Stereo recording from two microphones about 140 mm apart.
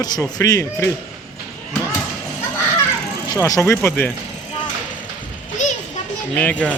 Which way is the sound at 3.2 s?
25° left (ahead or behind).